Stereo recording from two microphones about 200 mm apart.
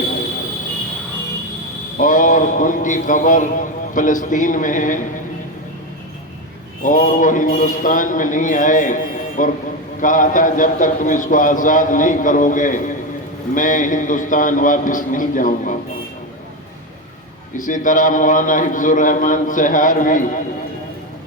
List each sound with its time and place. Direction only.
2.0 s a man's voice: 40° left (ahead or behind)
6.8 s a man's voice: 40° left (ahead or behind)
17.6 s a man's voice: 40° left (ahead or behind)